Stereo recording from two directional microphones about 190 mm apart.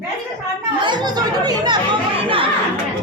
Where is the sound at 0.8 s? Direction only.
25° right (ahead or behind).